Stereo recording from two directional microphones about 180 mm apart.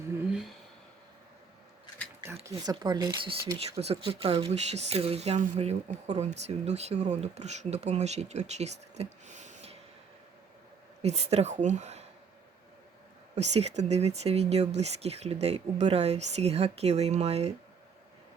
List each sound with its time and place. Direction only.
0.3 s a sound: 5° right (ahead or behind)
2.2 s speech: 15° right (ahead or behind); by 9.7 s 40° right (ahead or behind)
11.0 s speech: 35° right (ahead or behind)
13.3 s speech: 40° right (ahead or behind)